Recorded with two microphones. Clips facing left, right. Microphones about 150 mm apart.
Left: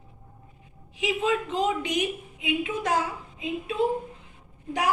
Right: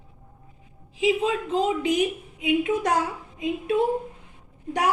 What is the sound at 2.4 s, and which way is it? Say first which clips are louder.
Speech: right 6 dB; 45° right (ahead or behind).